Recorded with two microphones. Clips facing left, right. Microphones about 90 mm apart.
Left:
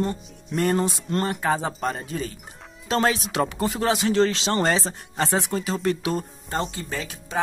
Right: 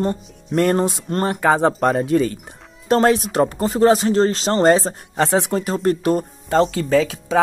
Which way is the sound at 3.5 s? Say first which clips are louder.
Right 8 dB; 40° right (ahead or behind).